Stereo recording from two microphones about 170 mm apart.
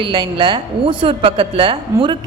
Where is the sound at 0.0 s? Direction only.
30° right (ahead or behind).